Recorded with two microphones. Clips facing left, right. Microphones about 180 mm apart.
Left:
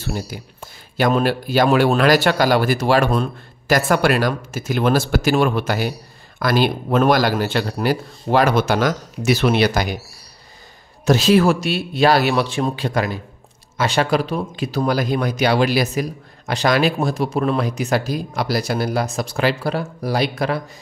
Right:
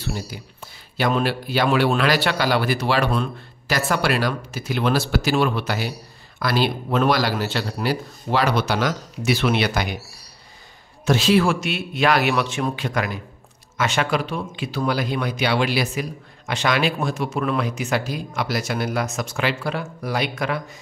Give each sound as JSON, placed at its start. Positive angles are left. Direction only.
{"t": 0.0, "sound": "speech", "side_deg": 45}
{"t": 11.1, "sound": "speech", "side_deg": 40}